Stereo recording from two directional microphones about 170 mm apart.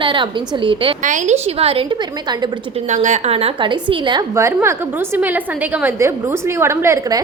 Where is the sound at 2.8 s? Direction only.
45° right (ahead or behind); by 4.2 s 25° right (ahead or behind).